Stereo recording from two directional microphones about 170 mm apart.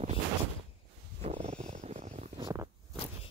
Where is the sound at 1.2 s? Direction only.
40° right (ahead or behind).